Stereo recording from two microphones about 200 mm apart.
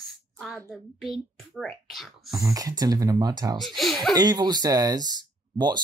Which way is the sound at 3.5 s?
Centre (ahead or behind).